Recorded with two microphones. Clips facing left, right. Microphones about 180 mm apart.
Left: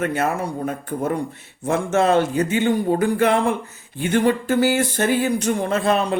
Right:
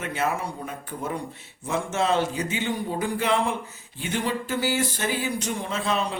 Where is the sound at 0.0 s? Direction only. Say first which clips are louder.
Left 6 dB; 50° left (ahead or behind).